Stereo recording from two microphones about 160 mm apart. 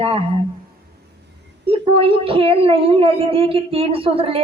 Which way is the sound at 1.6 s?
35° right (ahead or behind).